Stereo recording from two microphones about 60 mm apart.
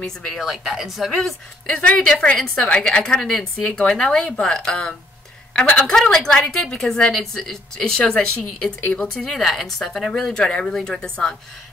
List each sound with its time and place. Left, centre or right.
0.0 s speech: centre
1.7 s a woman's voice: left
5.9 s speech: centre